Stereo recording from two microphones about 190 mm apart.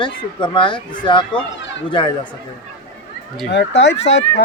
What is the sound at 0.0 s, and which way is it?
Speech, 25° left (ahead or behind).